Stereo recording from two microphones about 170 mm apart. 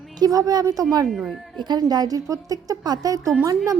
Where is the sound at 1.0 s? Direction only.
Centre (ahead or behind).